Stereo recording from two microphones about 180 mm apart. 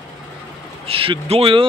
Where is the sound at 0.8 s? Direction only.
30° right (ahead or behind).